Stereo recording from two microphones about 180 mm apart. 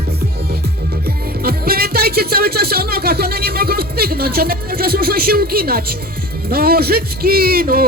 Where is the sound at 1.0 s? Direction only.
55° right (ahead or behind).